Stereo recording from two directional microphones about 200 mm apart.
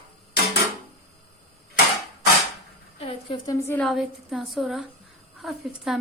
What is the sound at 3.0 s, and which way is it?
Speech, 25° left (ahead or behind).